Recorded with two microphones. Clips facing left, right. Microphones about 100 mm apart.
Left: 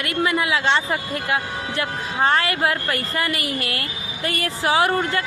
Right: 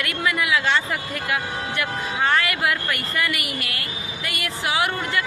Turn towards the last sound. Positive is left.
turn(degrees=35)  # may be behind; listen again after turning